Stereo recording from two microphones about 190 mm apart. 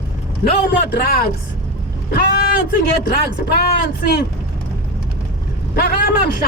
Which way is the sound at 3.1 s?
55° left (ahead or behind).